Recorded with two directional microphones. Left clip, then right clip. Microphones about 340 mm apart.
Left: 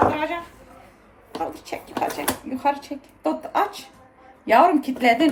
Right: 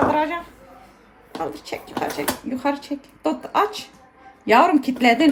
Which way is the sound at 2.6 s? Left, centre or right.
Right.